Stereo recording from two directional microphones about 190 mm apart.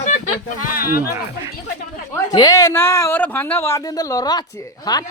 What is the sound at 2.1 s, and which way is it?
Speech, 20° left (ahead or behind).